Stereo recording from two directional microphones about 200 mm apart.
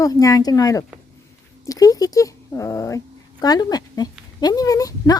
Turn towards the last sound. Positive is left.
turn(degrees=15)  # may be behind; listen again after turning